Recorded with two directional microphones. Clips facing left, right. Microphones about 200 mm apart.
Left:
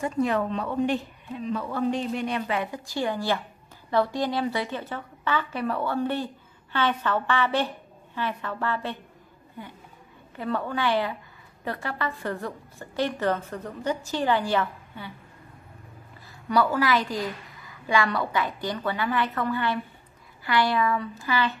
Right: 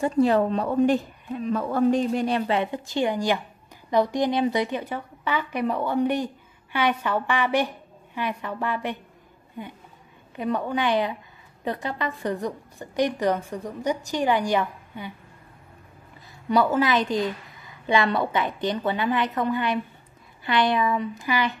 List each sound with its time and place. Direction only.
0.0 s a woman's voice: 30° right (ahead or behind); by 15.1 s 15° right (ahead or behind)
16.4 s a woman's voice: 20° right (ahead or behind)